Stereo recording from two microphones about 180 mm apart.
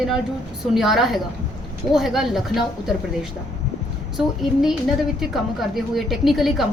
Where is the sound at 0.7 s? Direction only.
Centre (ahead or behind).